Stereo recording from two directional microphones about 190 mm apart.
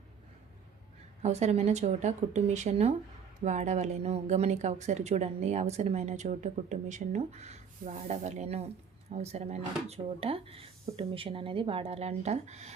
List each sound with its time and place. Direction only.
1.2 s speech: 35° right (ahead or behind)